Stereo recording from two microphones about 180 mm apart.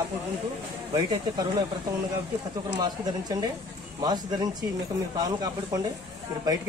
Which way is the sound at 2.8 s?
20° right (ahead or behind).